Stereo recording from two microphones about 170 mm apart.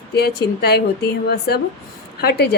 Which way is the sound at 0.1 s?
70° left (ahead or behind).